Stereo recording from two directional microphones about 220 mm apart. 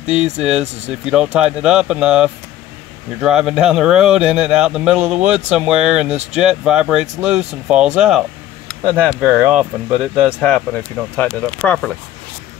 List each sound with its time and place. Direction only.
0.5 s speech: 30° right (ahead or behind)
1.0 s speech: 5° right (ahead or behind)